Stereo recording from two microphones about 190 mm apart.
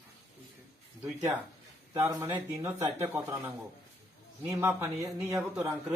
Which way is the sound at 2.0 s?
15° right (ahead or behind).